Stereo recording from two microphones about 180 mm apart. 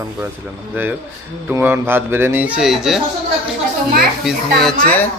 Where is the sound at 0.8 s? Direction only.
10° right (ahead or behind).